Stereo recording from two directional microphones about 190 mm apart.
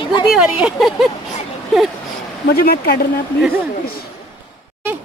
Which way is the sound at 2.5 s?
55° left (ahead or behind).